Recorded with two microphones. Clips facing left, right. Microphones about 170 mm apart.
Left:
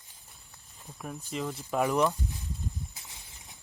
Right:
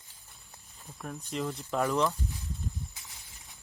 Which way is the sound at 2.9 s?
20° left (ahead or behind).